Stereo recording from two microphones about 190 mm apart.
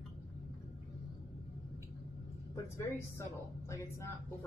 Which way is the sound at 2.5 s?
15° left (ahead or behind).